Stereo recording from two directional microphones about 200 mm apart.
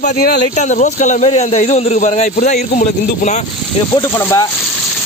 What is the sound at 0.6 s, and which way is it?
A man's voice, 35° left (ahead or behind).